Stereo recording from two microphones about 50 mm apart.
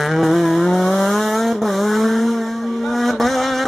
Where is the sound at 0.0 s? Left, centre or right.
Centre.